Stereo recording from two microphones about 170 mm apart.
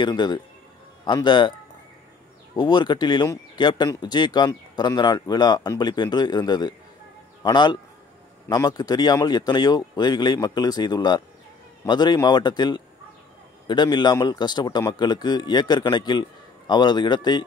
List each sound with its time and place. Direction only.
0.0 s speech: 25° left (ahead or behind)
2.5 s speech: 25° left (ahead or behind)